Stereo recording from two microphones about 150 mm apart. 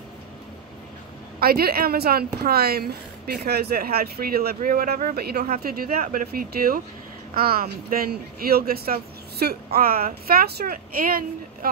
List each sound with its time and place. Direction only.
1.4 s a woman's voice: 90° right
4.6 s speech: 75° right (ahead or behind)